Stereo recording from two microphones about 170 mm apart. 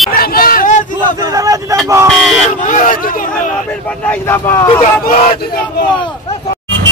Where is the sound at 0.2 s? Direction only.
60° left (ahead or behind).